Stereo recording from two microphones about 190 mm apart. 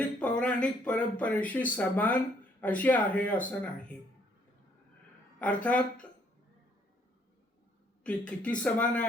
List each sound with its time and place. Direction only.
0.2 s speech: 5° left (ahead or behind)
5.4 s speech: 5° left (ahead or behind)
8.0 s speech: 5° left (ahead or behind)